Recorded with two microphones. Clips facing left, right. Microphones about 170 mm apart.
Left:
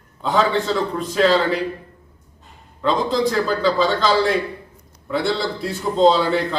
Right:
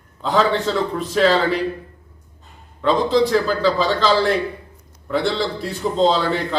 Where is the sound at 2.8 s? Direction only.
Centre (ahead or behind).